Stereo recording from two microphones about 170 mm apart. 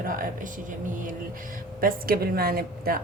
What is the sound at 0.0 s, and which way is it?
Speech, 55° right (ahead or behind).